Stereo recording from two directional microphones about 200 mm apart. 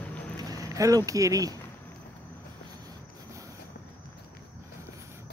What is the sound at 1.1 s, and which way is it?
Speech, 15° right (ahead or behind).